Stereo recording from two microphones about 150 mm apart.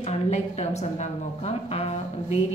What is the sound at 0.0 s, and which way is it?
A woman's voice, 45° left (ahead or behind).